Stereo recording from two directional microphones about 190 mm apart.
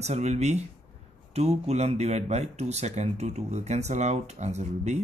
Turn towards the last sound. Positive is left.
turn(degrees=-35)  # may be behind; listen again after turning